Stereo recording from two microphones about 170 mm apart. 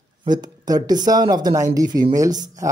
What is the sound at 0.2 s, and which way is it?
Speech, 25° right (ahead or behind).